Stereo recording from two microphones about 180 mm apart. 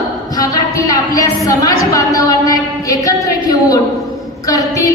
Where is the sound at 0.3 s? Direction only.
20° left (ahead or behind).